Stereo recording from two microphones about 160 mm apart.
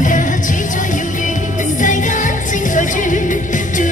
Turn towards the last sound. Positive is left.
turn(degrees=55)  # may be behind; listen again after turning